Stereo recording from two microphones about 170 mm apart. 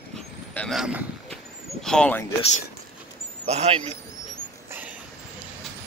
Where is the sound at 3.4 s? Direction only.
40° right (ahead or behind).